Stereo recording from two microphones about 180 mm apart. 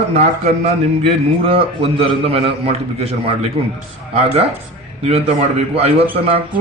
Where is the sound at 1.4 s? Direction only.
30° right (ahead or behind).